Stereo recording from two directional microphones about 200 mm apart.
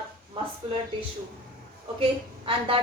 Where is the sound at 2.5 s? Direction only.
25° right (ahead or behind).